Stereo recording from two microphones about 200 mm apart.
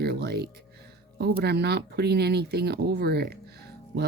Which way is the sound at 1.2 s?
55° right (ahead or behind).